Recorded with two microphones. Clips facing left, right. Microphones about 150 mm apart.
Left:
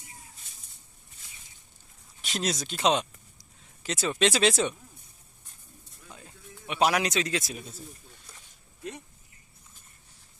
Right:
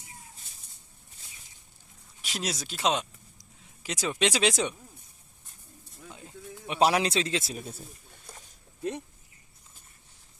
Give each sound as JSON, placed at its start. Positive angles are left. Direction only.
{"t": 2.2, "sound": "speech", "side_deg": -10}
{"t": 6.7, "sound": "speech", "side_deg": -30}